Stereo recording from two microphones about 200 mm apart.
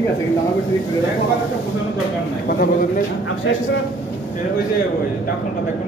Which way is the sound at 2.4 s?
45° left (ahead or behind).